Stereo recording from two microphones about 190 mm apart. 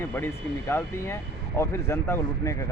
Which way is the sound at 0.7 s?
15° left (ahead or behind).